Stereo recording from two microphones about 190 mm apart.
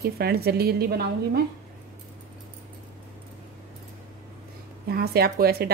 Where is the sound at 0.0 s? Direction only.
55° right (ahead or behind).